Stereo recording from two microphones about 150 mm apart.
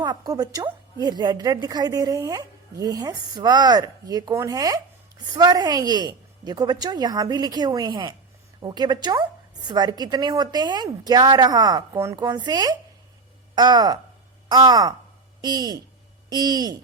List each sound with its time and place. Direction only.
0.0 s a woman's voice: 25° right (ahead or behind)